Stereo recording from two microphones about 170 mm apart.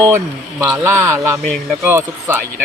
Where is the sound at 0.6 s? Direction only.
15° right (ahead or behind).